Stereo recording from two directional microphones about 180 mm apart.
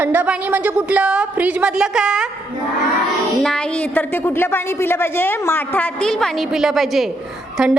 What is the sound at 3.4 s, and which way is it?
A woman's voice, 5° left (ahead or behind).